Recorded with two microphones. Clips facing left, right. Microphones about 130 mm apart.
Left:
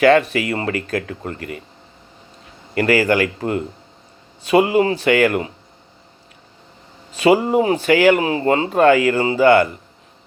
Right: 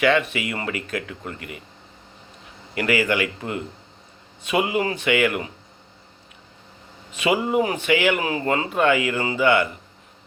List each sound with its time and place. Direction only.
0.0 s speech: 40° left (ahead or behind)
2.7 s speech: 40° left (ahead or behind)
7.1 s speech: 35° left (ahead or behind)